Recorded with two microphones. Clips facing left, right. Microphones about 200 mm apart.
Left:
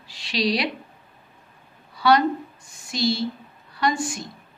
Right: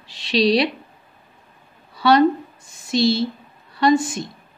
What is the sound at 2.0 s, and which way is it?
A woman's voice, 25° right (ahead or behind).